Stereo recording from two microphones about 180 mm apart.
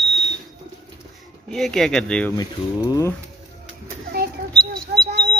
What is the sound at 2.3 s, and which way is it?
Speech, 20° left (ahead or behind).